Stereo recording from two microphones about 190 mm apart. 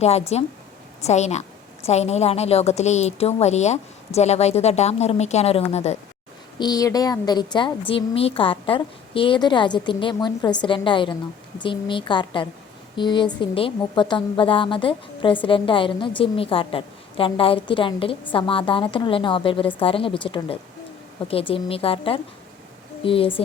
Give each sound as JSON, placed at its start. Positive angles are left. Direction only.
{"t": 0.0, "sound": "a woman's voice", "side_deg": 35}
{"t": 6.6, "sound": "a woman's voice", "side_deg": 20}